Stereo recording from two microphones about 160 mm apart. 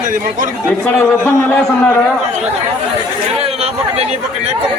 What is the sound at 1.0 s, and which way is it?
Speech, 15° left (ahead or behind).